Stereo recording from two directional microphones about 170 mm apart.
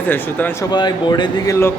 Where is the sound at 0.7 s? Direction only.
25° left (ahead or behind).